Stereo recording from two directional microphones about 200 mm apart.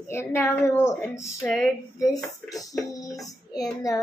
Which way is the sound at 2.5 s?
15° left (ahead or behind).